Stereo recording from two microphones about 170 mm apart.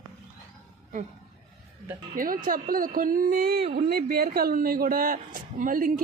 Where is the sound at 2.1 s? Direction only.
55° right (ahead or behind).